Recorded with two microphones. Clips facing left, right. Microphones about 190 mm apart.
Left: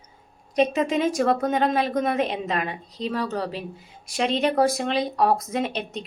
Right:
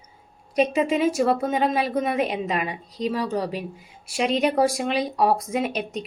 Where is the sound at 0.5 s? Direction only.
10° right (ahead or behind).